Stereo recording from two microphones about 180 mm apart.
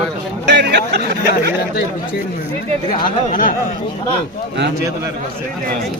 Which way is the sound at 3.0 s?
50° left (ahead or behind).